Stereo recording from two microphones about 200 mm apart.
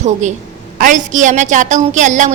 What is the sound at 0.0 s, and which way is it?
A woman's voice, 35° right (ahead or behind).